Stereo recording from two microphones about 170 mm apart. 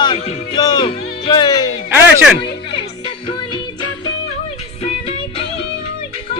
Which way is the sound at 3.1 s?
30° left (ahead or behind).